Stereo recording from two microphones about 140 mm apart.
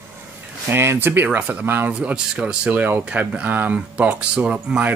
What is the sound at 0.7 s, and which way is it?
Speech, 15° right (ahead or behind).